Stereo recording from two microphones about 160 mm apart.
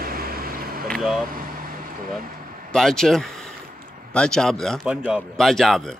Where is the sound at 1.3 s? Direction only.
65° right (ahead or behind).